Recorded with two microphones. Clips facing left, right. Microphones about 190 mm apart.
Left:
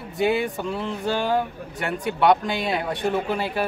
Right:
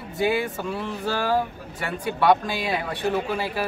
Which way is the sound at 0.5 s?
20° left (ahead or behind).